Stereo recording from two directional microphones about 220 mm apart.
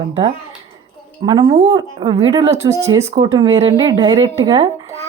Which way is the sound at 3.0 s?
25° right (ahead or behind).